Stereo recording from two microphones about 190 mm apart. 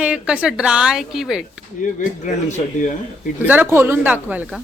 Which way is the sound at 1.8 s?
40° left (ahead or behind).